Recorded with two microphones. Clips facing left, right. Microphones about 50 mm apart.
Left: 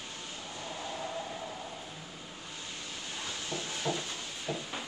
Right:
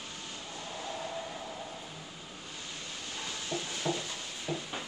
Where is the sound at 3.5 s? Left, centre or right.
Centre.